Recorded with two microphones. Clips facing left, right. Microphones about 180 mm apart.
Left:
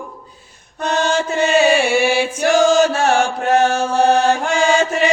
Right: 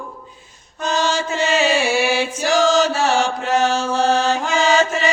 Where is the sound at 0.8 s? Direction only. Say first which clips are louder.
Left 2 dB; 60° left (ahead or behind).